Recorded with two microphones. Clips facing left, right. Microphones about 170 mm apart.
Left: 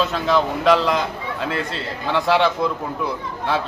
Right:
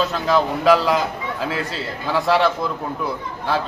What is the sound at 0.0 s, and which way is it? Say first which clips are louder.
A man's voice: even; centre (ahead or behind).